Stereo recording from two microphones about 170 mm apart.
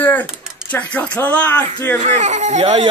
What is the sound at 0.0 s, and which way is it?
Speech, 10° left (ahead or behind).